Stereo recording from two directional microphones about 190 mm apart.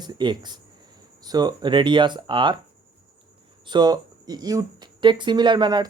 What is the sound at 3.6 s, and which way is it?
Speech, 20° right (ahead or behind).